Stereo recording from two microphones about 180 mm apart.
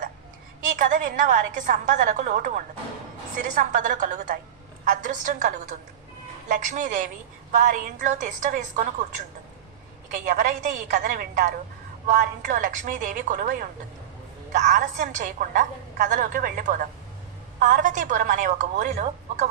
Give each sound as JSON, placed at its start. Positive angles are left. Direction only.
{"t": 0.6, "sound": "a woman's voice", "side_deg": -45}
{"t": 10.2, "sound": "a woman's voice", "side_deg": -45}